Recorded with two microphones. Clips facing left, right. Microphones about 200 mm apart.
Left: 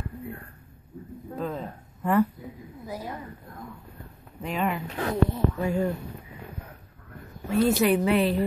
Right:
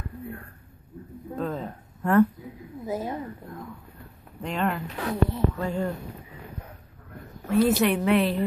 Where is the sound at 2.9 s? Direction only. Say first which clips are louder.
Right 6 dB; 20° right (ahead or behind).